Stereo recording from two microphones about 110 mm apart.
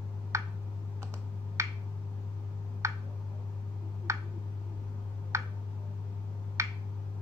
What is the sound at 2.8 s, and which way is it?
Tick, 25° right (ahead or behind).